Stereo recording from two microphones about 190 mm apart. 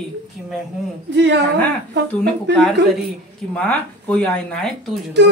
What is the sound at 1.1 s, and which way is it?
Speech, 65° right (ahead or behind).